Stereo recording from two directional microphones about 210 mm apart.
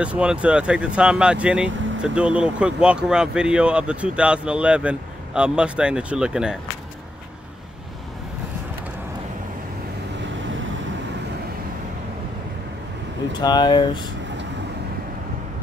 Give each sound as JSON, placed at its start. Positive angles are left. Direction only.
{"t": 0.0, "sound": "speech", "side_deg": -5}
{"t": 13.4, "sound": "speech", "side_deg": 20}